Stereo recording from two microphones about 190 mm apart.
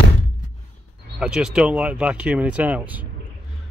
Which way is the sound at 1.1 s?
5° right (ahead or behind).